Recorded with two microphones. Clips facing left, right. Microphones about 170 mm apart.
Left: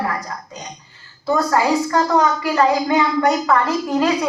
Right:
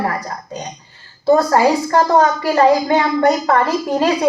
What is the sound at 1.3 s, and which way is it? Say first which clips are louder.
A woman's voice: right 5 dB; 35° right (ahead or behind).